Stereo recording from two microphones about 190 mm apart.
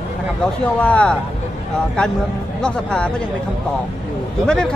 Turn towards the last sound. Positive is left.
turn(degrees=5)  # may be behind; listen again after turning